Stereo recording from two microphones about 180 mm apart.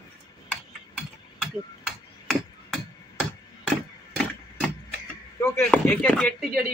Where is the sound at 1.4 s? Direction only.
Centre (ahead or behind).